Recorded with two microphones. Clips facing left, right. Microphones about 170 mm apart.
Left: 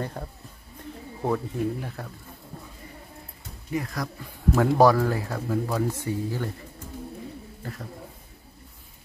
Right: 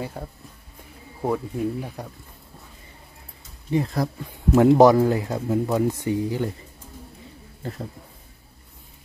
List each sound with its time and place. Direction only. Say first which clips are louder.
0.0 s speech: right 1 dB; 5° right (ahead or behind)
3.7 s speech: right 6 dB; 25° right (ahead or behind)